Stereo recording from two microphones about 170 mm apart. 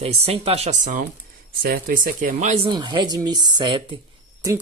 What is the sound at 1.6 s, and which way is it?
Speech, 60° right (ahead or behind).